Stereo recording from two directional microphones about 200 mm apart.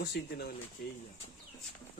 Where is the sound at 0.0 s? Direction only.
55° left (ahead or behind).